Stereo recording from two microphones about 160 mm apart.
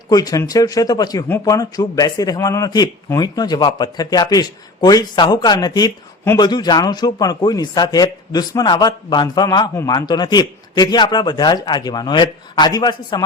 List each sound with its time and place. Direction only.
0.1 s speech: 25° left (ahead or behind)